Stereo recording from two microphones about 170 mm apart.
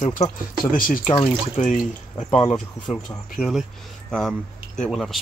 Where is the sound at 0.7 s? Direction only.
55° left (ahead or behind).